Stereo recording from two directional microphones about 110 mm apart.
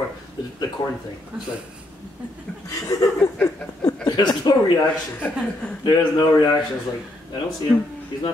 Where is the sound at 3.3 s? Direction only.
15° left (ahead or behind).